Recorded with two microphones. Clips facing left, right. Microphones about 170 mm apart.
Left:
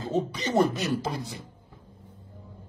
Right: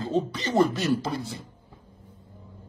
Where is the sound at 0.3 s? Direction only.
15° left (ahead or behind).